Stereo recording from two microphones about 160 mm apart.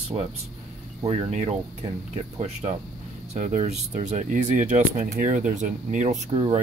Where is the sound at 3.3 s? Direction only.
50° right (ahead or behind).